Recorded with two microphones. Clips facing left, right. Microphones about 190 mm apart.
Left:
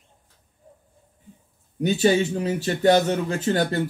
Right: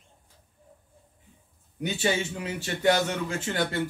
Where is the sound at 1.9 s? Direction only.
35° left (ahead or behind).